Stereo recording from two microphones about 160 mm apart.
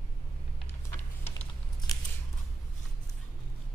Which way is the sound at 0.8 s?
15° left (ahead or behind).